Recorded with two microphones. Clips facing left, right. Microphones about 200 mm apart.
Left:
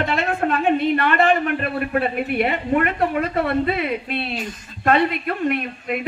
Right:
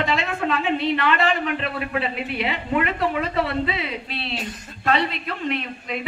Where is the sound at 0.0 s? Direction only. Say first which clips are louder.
Left 3 dB; 55° left (ahead or behind).